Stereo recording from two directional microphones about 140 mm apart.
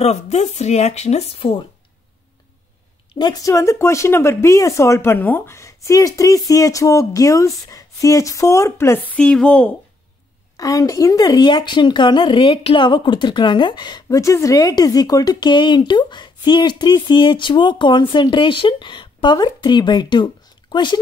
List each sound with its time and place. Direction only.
0.0 s speech: 50° left (ahead or behind)
3.2 s speech: 30° left (ahead or behind); by 9.8 s 10° left (ahead or behind)
10.6 s a woman's voice: 25° left (ahead or behind)